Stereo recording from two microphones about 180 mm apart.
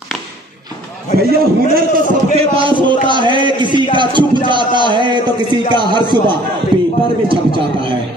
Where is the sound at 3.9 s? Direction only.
25° right (ahead or behind).